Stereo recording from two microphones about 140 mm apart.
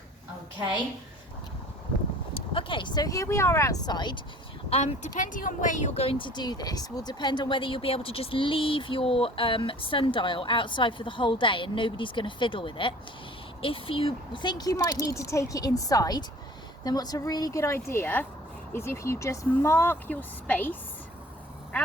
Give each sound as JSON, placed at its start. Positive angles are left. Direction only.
{"t": 2.3, "sound": "speech", "side_deg": 40}
{"t": 4.7, "sound": "speech", "side_deg": 45}
{"t": 5.1, "sound": "speech", "side_deg": 70}
{"t": 6.0, "sound": "speech", "side_deg": 40}